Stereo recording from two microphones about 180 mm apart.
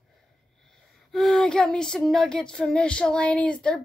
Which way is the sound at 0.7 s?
Centre (ahead or behind).